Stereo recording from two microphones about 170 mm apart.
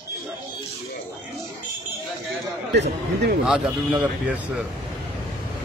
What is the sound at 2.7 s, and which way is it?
Speech, 80° right.